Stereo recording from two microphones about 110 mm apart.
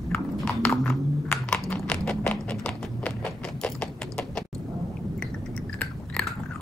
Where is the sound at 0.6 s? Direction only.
15° left (ahead or behind).